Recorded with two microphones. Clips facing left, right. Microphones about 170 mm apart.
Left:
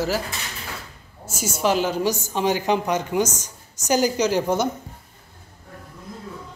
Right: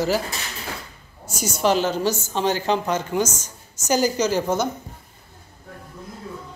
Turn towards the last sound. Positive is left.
turn(degrees=15)  # may be behind; listen again after turning